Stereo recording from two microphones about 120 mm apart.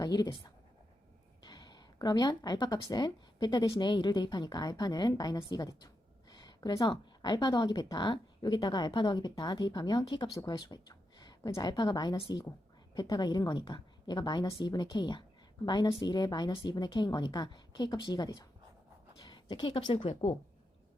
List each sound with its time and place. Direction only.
0.0 s a woman's voice: 35° left (ahead or behind)
6.3 s a sound: 35° left (ahead or behind)
7.2 s a woman's voice: 35° left (ahead or behind); by 20.3 s 55° left (ahead or behind)